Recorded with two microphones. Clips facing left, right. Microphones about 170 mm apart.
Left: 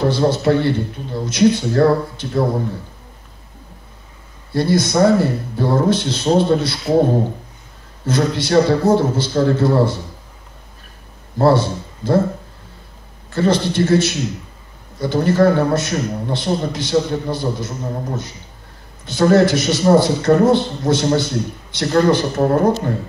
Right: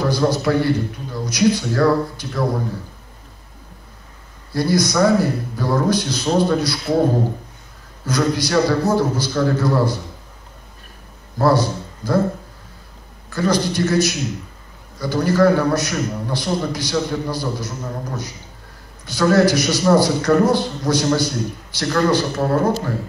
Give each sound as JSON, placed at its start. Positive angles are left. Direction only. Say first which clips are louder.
{"t": 0.0, "sound": "a man's voice", "louder": "left 2 dB", "side_deg": 25}
{"t": 4.5, "sound": "a man's voice", "louder": "left 2 dB", "side_deg": 25}
{"t": 8.0, "sound": "a man's voice", "louder": "left 1 dB", "side_deg": 25}
{"t": 11.3, "sound": "a man's voice", "louder": "left 2 dB", "side_deg": 25}
{"t": 13.3, "sound": "a man's voice", "louder": "left 2 dB", "side_deg": 25}